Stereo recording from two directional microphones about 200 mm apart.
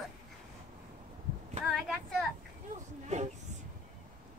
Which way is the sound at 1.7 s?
Centre (ahead or behind).